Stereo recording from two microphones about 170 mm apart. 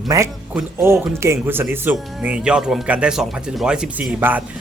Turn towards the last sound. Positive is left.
turn(degrees=-10)  # may be behind; listen again after turning